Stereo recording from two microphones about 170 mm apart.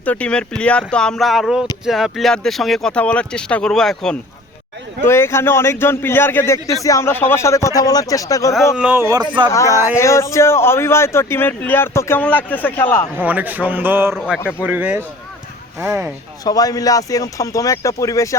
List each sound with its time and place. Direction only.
0.0 s speech: 10° left (ahead or behind)
5.0 s a man's voice: 15° left (ahead or behind)
8.7 s a man's voice: 10° right (ahead or behind); by 9.5 s 25° right (ahead or behind)
9.5 s a man's voice: 20° left (ahead or behind)
13.1 s a man's voice: 10° right (ahead or behind)
16.4 s speech: 20° left (ahead or behind)